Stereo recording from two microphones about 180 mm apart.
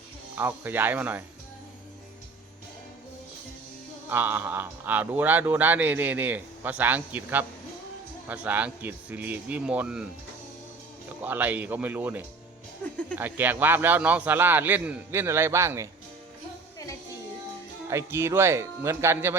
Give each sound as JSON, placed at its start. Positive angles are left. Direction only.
{"t": 0.3, "sound": "speech", "side_deg": -10}
{"t": 4.1, "sound": "speech", "side_deg": -10}
{"t": 11.2, "sound": "speech", "side_deg": -10}
{"t": 17.8, "sound": "speech", "side_deg": -15}